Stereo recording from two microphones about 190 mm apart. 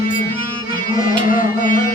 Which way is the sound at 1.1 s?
45° left (ahead or behind).